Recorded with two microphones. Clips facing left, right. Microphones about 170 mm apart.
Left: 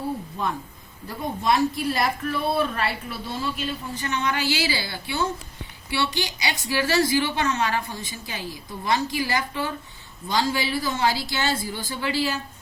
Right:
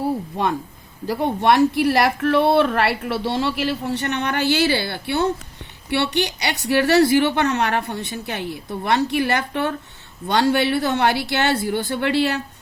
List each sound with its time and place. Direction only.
0.4 s a woman's voice: 80° right; by 12.4 s 65° right (ahead or behind)